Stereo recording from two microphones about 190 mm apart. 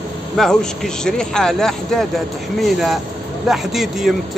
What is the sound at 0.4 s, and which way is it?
A man's voice, 5° left (ahead or behind).